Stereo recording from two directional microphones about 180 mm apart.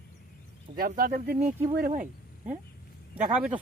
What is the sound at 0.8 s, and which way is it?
Speech, 55° right (ahead or behind).